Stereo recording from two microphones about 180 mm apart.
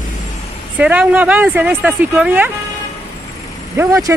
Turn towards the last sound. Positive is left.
turn(degrees=-15)  # may be behind; listen again after turning